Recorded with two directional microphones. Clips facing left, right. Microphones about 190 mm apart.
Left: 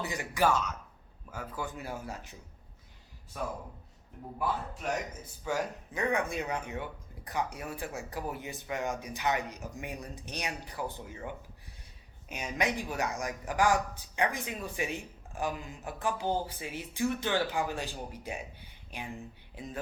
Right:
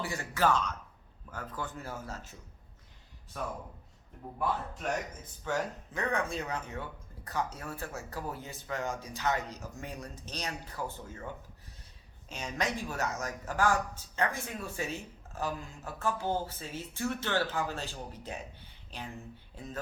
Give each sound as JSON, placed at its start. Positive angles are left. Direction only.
{"t": 0.0, "sound": "speech", "side_deg": 15}
{"t": 5.5, "sound": "speech", "side_deg": 10}
{"t": 12.3, "sound": "speech", "side_deg": 10}